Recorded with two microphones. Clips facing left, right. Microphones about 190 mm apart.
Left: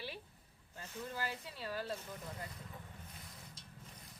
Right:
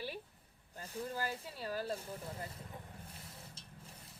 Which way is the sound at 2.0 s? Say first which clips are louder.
Right 2 dB; 30° right (ahead or behind).